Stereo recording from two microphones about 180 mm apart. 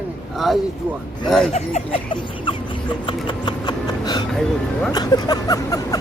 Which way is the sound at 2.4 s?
30° left (ahead or behind).